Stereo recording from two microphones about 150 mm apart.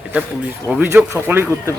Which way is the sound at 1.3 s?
15° right (ahead or behind).